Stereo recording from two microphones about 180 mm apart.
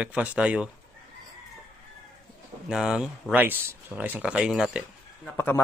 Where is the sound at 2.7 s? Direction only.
Centre (ahead or behind).